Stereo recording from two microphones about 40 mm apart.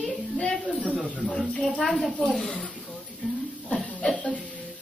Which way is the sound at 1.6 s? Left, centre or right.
Centre.